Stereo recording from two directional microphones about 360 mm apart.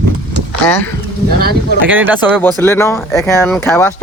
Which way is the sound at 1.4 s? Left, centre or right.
Right.